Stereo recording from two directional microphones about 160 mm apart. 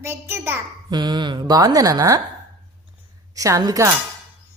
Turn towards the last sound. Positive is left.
turn(degrees=-20)  # may be behind; listen again after turning